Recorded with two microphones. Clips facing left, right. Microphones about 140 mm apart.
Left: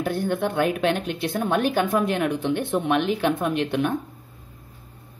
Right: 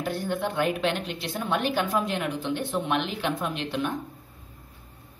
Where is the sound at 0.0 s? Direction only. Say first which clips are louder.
Left 4 dB; 55° left (ahead or behind).